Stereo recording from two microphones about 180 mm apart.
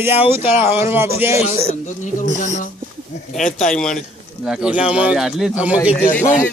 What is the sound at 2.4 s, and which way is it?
Speech, 40° left (ahead or behind).